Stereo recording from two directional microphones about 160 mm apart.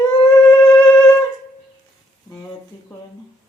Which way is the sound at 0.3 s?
15° left (ahead or behind).